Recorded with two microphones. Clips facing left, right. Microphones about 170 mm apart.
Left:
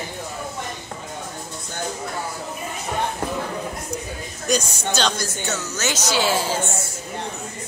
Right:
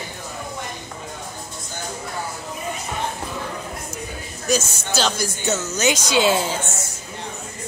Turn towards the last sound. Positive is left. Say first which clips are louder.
# left 1 dB
turn(degrees=-20)  # may be behind; listen again after turning